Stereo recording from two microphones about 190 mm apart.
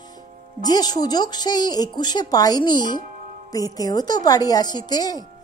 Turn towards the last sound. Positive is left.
turn(degrees=20)  # may be behind; listen again after turning